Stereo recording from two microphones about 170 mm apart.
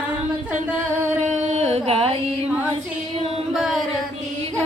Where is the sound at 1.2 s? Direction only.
45° right (ahead or behind).